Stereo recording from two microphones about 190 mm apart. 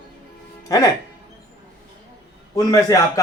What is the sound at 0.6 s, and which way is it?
Speech, 20° left (ahead or behind).